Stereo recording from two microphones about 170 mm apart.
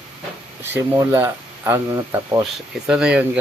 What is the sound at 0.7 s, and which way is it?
Speech, 15° right (ahead or behind).